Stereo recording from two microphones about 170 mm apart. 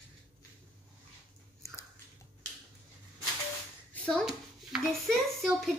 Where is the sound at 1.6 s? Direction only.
15° left (ahead or behind).